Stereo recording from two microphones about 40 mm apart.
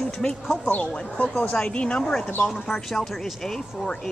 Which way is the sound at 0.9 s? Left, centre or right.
Left.